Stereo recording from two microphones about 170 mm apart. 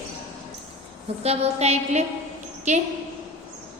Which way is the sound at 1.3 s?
40° right (ahead or behind).